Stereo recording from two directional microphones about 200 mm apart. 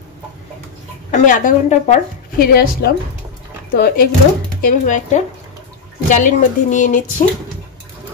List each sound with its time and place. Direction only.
1.1 s speech: 40° left (ahead or behind)
2.4 s a woman's voice: 50° left (ahead or behind)